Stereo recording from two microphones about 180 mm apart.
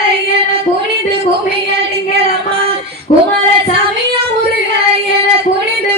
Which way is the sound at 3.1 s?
35° left (ahead or behind).